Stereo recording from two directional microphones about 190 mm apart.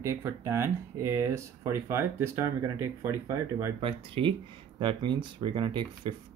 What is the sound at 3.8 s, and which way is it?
Speech, 30° right (ahead or behind).